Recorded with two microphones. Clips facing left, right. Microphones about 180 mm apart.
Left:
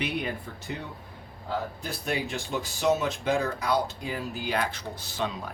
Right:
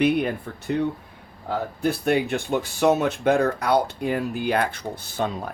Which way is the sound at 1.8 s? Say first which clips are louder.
Right 10 dB; 60° right (ahead or behind).